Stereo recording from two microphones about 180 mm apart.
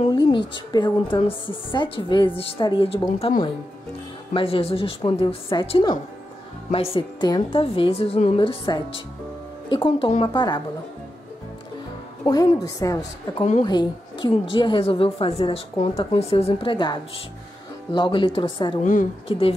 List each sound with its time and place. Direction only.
0.0 s a woman's voice: 25° left (ahead or behind)
12.3 s a woman's voice: 20° left (ahead or behind)
13.4 s a woman's voice: 40° left (ahead or behind)
13.7 s a woman's voice: 25° left (ahead or behind)
18.8 s a woman's voice: 45° left (ahead or behind)
19.2 s a woman's voice: 30° left (ahead or behind)